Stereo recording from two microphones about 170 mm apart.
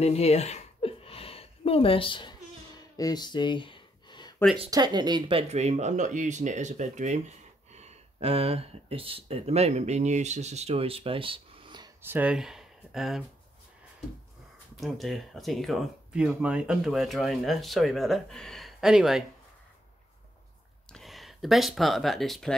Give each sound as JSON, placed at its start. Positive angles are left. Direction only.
{"t": 0.0, "sound": "a sound", "side_deg": 40}
{"t": 4.6, "sound": "speech", "side_deg": -25}
{"t": 5.5, "sound": "speech", "side_deg": -40}
{"t": 12.0, "sound": "speech", "side_deg": -10}
{"t": 14.8, "sound": "speech", "side_deg": 0}
{"t": 20.9, "sound": "speech", "side_deg": 0}